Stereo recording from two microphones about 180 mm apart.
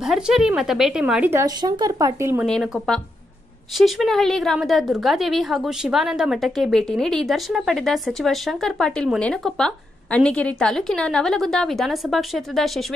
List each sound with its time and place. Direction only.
0.0 s a woman's voice: centre (ahead or behind)
1.4 s speech: 20° right (ahead or behind)
2.4 s a woman's voice: centre (ahead or behind)